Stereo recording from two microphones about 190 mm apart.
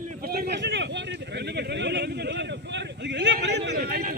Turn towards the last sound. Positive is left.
turn(degrees=-55)  # may be behind; listen again after turning